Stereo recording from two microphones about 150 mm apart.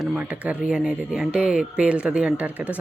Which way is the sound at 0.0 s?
5° right (ahead or behind).